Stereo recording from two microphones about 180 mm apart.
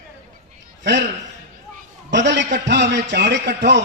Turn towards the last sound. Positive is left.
turn(degrees=-70)  # may be behind; listen again after turning